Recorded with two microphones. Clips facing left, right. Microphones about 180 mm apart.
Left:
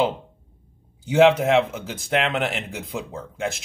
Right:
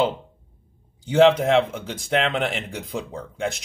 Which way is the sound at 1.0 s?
5° left (ahead or behind).